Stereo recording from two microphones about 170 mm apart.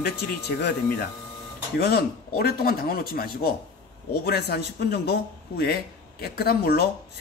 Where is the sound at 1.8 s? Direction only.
65° left (ahead or behind).